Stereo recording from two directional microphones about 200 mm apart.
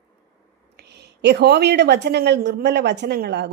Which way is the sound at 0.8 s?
55° right (ahead or behind).